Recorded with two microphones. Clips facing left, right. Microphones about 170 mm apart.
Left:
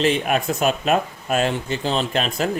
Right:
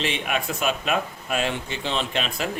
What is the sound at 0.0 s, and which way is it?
Speech, 40° left (ahead or behind).